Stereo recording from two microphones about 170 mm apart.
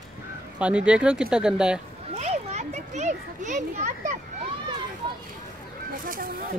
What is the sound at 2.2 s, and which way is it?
Children playing, 40° right (ahead or behind).